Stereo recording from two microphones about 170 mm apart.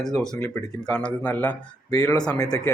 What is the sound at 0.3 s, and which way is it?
Speech, 15° left (ahead or behind).